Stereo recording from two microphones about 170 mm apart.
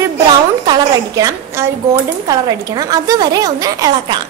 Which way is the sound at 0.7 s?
25° right (ahead or behind).